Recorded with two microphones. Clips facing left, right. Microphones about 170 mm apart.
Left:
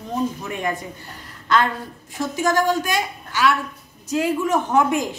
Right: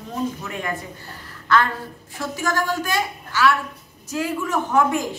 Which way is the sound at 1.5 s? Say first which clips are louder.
Even; 20° left (ahead or behind).